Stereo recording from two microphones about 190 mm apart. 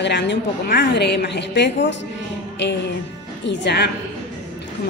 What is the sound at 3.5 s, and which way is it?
Speech, 60° left (ahead or behind).